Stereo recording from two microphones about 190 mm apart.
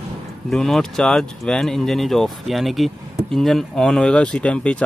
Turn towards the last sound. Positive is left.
turn(degrees=5)  # may be behind; listen again after turning